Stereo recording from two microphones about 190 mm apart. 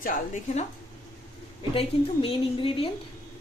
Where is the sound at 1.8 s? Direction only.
30° left (ahead or behind).